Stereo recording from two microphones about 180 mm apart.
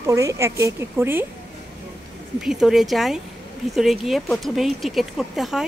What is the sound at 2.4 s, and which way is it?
Speech, 5° right (ahead or behind).